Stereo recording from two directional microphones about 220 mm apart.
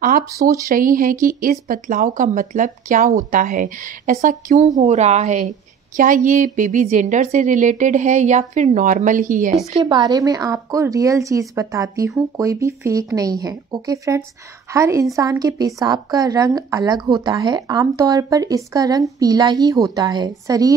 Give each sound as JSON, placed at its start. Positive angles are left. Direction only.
{"t": 0.3, "sound": "a woman's voice", "side_deg": -15}
{"t": 0.7, "sound": "a woman's voice", "side_deg": -40}
{"t": 9.7, "sound": "a woman's voice", "side_deg": -20}